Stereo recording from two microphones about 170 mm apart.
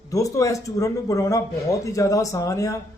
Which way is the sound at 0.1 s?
20° left (ahead or behind).